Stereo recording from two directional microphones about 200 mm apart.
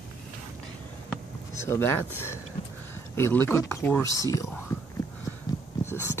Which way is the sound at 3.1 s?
10° left (ahead or behind).